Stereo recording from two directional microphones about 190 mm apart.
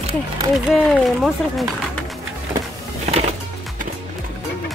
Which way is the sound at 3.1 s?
35° right (ahead or behind).